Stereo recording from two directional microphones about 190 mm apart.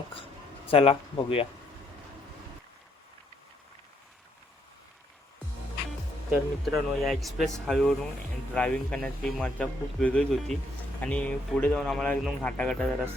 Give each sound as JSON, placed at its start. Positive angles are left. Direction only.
{"t": 0.7, "sound": "speech", "side_deg": 30}
{"t": 6.3, "sound": "speech", "side_deg": 0}